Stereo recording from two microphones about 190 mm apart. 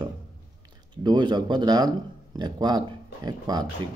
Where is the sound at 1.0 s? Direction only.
25° right (ahead or behind).